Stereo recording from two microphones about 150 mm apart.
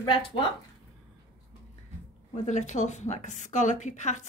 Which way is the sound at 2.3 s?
50° left (ahead or behind).